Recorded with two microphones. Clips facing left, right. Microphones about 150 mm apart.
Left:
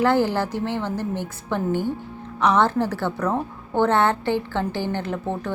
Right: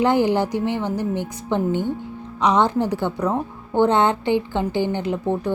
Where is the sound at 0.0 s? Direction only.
15° right (ahead or behind).